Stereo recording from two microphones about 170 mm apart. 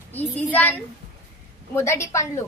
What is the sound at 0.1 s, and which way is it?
A child's voice, 10° left (ahead or behind).